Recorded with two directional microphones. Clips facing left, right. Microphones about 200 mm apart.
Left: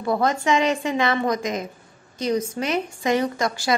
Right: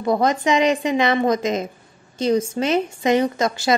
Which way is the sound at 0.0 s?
20° right (ahead or behind).